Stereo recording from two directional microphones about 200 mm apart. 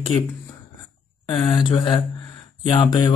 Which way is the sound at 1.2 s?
25° left (ahead or behind).